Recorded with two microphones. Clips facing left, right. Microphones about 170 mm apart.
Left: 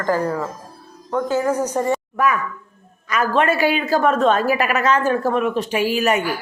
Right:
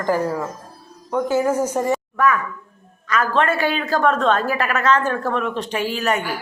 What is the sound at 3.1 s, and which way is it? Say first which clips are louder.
A woman's voice: left 1 dB; 10° left (ahead or behind).